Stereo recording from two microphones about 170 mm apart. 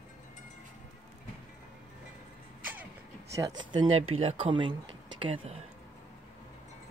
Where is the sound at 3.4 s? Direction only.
20° right (ahead or behind).